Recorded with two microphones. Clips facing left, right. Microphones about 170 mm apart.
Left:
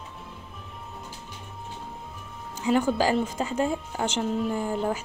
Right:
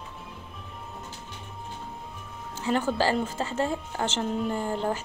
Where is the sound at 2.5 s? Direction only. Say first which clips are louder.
Left 3 dB; 10° left (ahead or behind).